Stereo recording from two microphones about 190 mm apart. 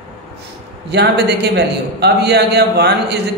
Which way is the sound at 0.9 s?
60° right (ahead or behind).